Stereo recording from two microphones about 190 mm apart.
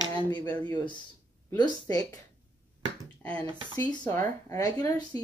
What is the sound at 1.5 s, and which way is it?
Speech, 20° left (ahead or behind).